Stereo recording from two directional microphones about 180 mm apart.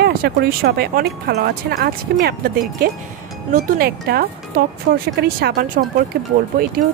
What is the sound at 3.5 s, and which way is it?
Speech, 55° right (ahead or behind).